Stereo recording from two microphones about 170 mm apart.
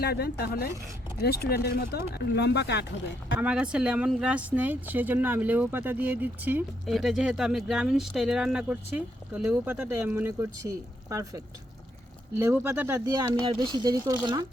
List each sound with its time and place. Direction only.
0.0 s speech: 70° left (ahead or behind)
3.4 s speech: 5° right (ahead or behind)
13.2 s speech: 30° right (ahead or behind)